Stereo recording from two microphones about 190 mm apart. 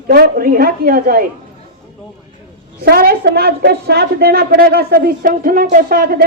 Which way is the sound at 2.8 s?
55° right (ahead or behind).